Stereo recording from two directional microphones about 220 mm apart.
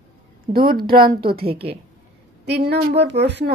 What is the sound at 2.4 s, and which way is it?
A woman's voice, 50° right (ahead or behind).